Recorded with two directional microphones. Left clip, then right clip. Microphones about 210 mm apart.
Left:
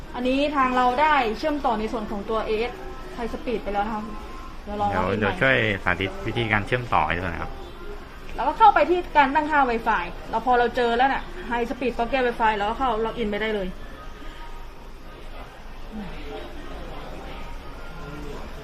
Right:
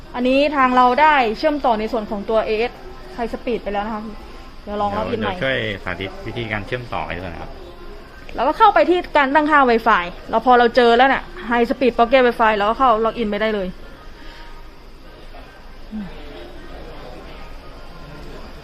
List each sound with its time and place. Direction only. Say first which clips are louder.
0.1 s a woman's voice: right 7 dB; 50° right (ahead or behind)
4.9 s a man's voice: right 1 dB; 5° left (ahead or behind)
8.4 s a woman's voice: right 3 dB; 50° right (ahead or behind)